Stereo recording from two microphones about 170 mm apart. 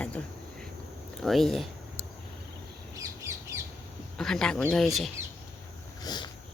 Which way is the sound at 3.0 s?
15° right (ahead or behind).